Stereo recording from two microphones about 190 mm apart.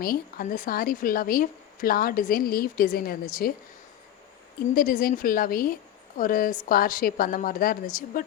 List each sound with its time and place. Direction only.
0.0 s a woman's voice: 50° left (ahead or behind)
4.7 s a woman's voice: 50° left (ahead or behind)